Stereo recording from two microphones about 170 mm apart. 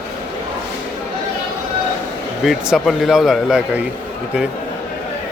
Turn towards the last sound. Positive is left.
turn(degrees=-5)  # may be behind; listen again after turning